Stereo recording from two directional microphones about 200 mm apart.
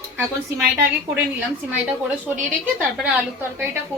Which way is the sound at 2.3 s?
5° right (ahead or behind).